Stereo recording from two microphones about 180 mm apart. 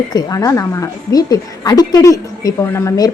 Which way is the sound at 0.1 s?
20° left (ahead or behind).